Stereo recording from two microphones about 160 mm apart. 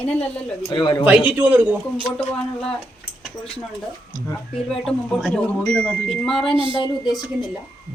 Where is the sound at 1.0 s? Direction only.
10° right (ahead or behind).